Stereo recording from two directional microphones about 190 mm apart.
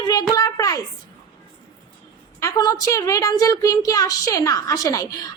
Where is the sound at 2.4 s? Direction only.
20° left (ahead or behind).